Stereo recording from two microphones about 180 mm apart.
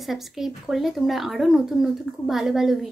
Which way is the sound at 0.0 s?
Centre (ahead or behind).